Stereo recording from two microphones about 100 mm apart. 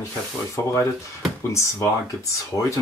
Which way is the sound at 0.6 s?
25° left (ahead or behind).